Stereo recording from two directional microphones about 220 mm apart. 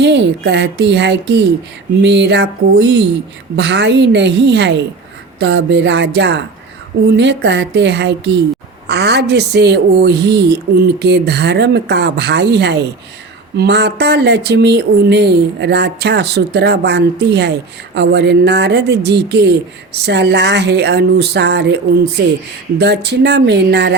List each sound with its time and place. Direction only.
0.0 s speech: 50° right (ahead or behind)
22.8 s speech: 50° right (ahead or behind)